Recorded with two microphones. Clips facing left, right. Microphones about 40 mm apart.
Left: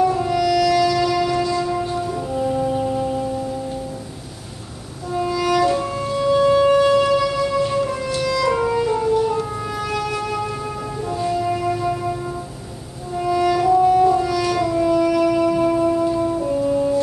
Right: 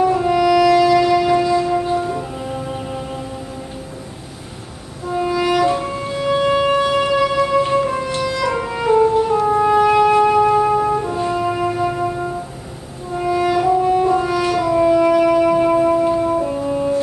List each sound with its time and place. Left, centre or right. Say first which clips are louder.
0.0 s music: right 3 dB; centre
5.1 s music: right 2 dB; right
13.1 s music: right 1 dB; centre